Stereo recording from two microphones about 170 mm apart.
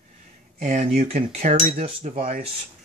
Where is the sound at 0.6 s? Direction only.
45° right (ahead or behind).